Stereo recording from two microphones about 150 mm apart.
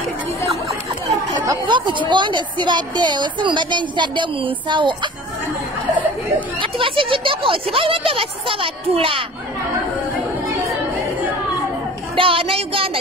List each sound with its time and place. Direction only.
1.4 s a woman's voice: 30° right (ahead or behind)
6.6 s a woman's voice: 35° right (ahead or behind)
12.2 s child singing: 35° right (ahead or behind)